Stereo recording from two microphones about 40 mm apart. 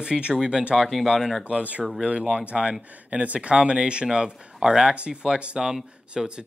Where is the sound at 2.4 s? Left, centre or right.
Right.